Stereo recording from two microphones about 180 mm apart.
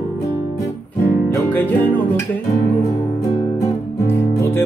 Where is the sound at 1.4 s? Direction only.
10° left (ahead or behind).